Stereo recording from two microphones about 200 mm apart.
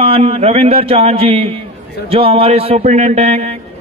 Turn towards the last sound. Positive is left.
turn(degrees=-30)  # may be behind; listen again after turning